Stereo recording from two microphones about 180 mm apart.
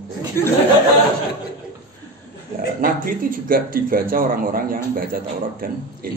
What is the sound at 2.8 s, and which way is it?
A man's voice, 50° right (ahead or behind).